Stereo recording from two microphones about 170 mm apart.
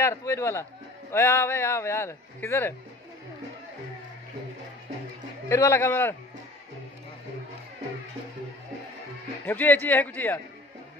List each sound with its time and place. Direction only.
0.0 s a man's voice: 15° left (ahead or behind)
5.5 s a man's voice: 15° left (ahead or behind)
9.5 s a man's voice: 10° left (ahead or behind)